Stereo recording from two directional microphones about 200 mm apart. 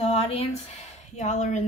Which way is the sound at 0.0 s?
30° left (ahead or behind).